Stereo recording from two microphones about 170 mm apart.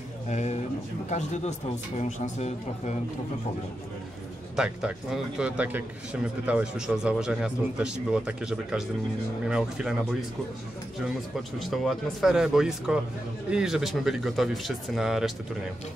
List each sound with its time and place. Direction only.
0.3 s speech: 40° left (ahead or behind)
4.6 s a man's voice: 5° right (ahead or behind)
11.6 s a man's voice: centre (ahead or behind)